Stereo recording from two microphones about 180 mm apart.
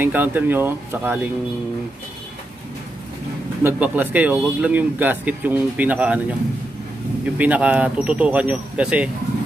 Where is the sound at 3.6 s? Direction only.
10° right (ahead or behind).